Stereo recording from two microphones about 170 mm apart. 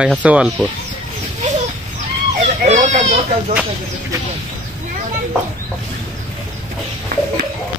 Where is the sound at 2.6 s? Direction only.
45° right (ahead or behind).